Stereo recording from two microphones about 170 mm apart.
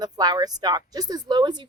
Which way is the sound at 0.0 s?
25° right (ahead or behind).